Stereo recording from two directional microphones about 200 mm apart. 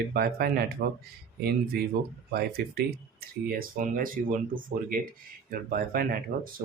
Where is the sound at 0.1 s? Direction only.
50° right (ahead or behind).